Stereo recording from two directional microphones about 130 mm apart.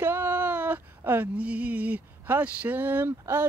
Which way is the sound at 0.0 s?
15° right (ahead or behind).